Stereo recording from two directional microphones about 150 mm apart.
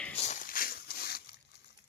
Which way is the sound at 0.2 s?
55° left (ahead or behind).